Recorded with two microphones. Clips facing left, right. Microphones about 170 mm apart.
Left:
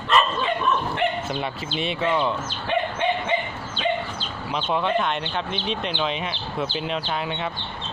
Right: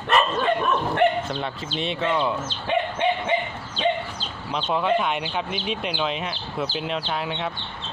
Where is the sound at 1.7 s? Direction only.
5° left (ahead or behind).